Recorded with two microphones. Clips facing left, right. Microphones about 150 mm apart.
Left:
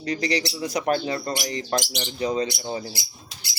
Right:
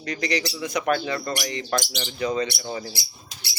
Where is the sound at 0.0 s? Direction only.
30° left (ahead or behind).